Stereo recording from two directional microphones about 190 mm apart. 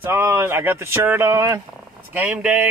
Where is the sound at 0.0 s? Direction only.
10° right (ahead or behind).